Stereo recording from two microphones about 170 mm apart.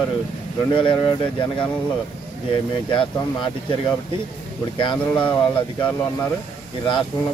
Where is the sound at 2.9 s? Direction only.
30° left (ahead or behind).